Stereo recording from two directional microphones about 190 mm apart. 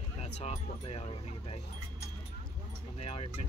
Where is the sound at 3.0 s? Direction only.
30° left (ahead or behind).